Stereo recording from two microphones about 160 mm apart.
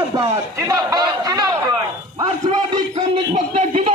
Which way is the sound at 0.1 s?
20° right (ahead or behind).